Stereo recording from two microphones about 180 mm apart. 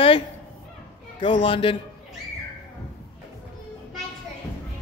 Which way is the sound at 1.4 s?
30° left (ahead or behind).